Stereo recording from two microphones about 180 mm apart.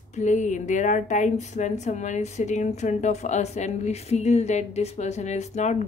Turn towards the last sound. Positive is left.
turn(degrees=40)  # may be behind; listen again after turning